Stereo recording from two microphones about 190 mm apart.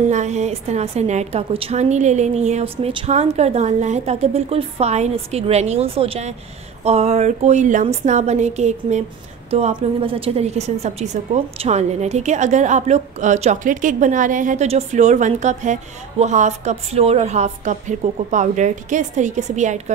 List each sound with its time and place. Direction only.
0.0 s a woman's voice: 40° right (ahead or behind)